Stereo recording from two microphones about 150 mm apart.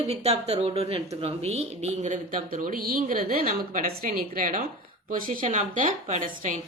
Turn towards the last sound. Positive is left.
turn(degrees=-60)  # may be behind; listen again after turning